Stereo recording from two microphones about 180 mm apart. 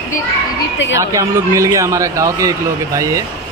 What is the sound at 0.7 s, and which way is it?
Speech, 90° left.